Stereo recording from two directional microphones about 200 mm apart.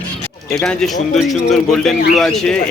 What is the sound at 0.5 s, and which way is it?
Speech, 5° left (ahead or behind).